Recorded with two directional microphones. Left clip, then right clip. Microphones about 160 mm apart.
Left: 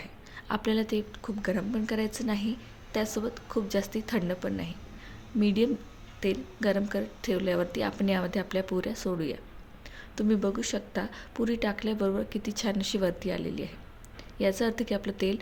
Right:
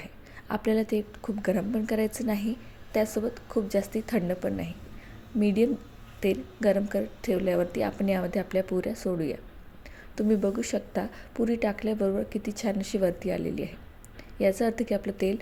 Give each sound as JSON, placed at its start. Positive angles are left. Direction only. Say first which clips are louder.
{"t": 0.0, "sound": "a woman's voice", "louder": "left 1 dB", "side_deg": -15}